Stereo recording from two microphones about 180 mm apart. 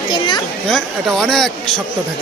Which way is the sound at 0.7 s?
Centre (ahead or behind).